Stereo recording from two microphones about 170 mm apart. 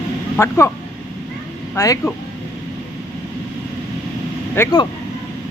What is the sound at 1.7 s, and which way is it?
Speech, 15° left (ahead or behind).